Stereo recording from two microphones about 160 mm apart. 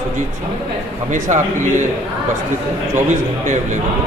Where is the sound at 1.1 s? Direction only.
50° right (ahead or behind).